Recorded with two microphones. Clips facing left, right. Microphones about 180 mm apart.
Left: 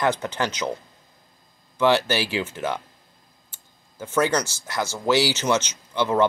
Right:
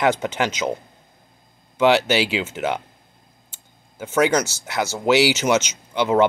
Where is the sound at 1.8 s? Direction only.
20° right (ahead or behind).